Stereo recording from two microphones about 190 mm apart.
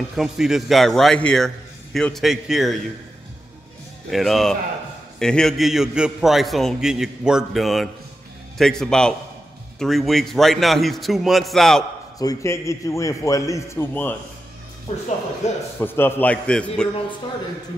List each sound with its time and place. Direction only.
0.1 s a man's voice: centre (ahead or behind)
4.1 s a man's voice: centre (ahead or behind)
12.2 s a man's voice: 15° left (ahead or behind)
15.4 s a man's voice: 35° left (ahead or behind)
15.8 s a man's voice: 10° left (ahead or behind)